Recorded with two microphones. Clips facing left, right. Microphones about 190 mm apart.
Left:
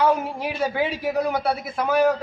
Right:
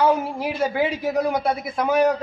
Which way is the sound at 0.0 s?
10° right (ahead or behind).